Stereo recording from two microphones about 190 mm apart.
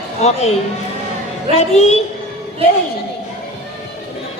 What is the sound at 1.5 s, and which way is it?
Speech, 35° left (ahead or behind).